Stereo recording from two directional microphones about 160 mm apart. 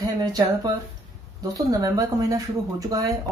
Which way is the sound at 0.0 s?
25° right (ahead or behind).